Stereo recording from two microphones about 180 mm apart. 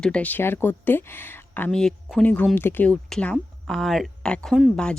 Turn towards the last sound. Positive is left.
turn(degrees=5)  # may be behind; listen again after turning